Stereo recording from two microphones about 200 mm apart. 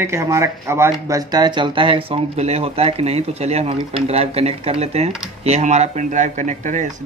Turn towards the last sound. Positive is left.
turn(degrees=-35)  # may be behind; listen again after turning